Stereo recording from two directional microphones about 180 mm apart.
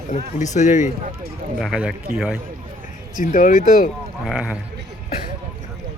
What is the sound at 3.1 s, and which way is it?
Speech, 50° left (ahead or behind).